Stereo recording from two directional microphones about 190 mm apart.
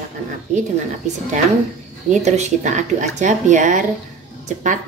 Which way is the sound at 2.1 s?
40° right (ahead or behind).